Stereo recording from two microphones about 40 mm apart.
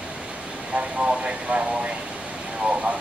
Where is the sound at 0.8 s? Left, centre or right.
Right.